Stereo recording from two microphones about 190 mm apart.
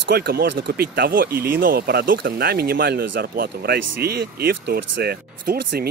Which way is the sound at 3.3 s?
55° right (ahead or behind).